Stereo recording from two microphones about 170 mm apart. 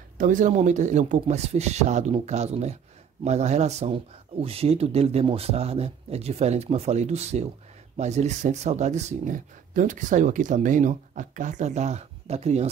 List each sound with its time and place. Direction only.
0.2 s a man's voice: 50° right (ahead or behind)